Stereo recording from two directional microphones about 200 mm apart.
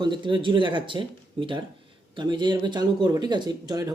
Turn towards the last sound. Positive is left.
turn(degrees=-20)  # may be behind; listen again after turning